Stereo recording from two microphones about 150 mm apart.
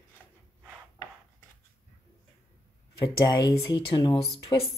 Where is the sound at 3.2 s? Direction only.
30° left (ahead or behind).